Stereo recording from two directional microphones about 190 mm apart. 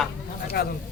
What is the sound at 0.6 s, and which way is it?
Speech, 55° left (ahead or behind).